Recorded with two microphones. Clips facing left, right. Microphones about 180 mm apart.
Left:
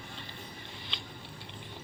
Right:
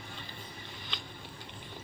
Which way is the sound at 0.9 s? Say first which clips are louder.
Right 1 dB; 25° left (ahead or behind).